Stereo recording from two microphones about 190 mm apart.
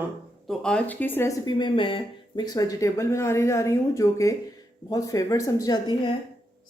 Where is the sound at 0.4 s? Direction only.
5° left (ahead or behind).